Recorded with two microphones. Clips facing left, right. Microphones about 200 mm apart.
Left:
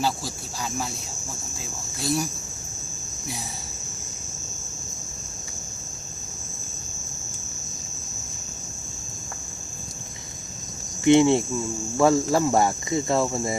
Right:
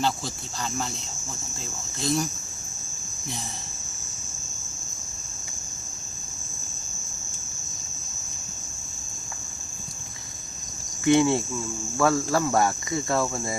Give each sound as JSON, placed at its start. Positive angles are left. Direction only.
{"t": 2.0, "sound": "cricket", "side_deg": 5}
{"t": 11.0, "sound": "cricket", "side_deg": 25}